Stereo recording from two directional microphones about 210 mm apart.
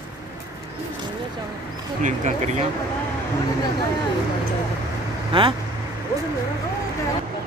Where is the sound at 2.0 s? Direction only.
35° right (ahead or behind).